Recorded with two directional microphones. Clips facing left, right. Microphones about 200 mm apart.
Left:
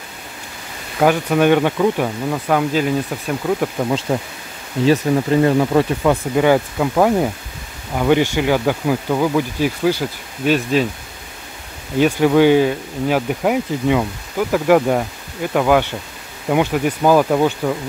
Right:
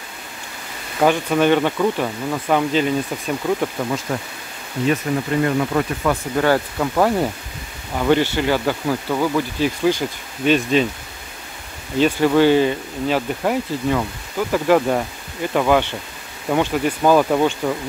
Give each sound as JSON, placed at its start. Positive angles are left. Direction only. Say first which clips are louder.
{"t": 0.9, "sound": "speech", "louder": "left 2 dB", "side_deg": 10}
{"t": 4.1, "sound": "speech", "louder": "left 4 dB", "side_deg": 25}
{"t": 6.3, "sound": "speech", "louder": "left 2 dB", "side_deg": 10}
{"t": 12.0, "sound": "speech", "louder": "left 2 dB", "side_deg": 10}